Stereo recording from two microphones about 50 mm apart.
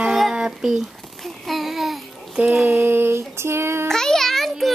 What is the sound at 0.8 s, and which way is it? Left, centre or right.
Babbling, centre.